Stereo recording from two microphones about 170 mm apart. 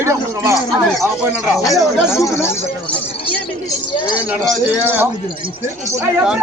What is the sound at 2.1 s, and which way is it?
Speech, 15° left (ahead or behind).